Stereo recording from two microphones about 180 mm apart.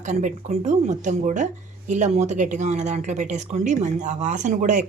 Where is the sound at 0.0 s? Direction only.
45° right (ahead or behind).